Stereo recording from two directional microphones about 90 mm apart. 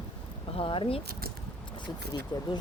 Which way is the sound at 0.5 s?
85° left.